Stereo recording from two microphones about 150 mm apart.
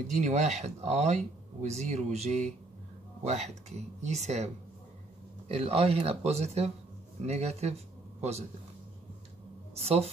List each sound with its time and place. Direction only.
0.1 s speech: 50° right (ahead or behind)
5.5 s a man's voice: 40° right (ahead or behind)
9.8 s speech: 45° right (ahead or behind)